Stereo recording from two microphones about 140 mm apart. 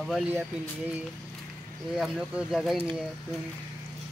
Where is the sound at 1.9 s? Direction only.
5° right (ahead or behind).